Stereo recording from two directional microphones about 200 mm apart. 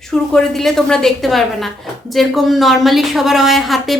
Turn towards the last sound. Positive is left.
turn(degrees=0)  # may be behind; listen again after turning